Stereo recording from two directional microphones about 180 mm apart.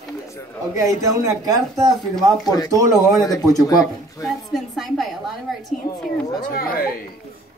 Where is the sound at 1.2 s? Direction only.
20° right (ahead or behind).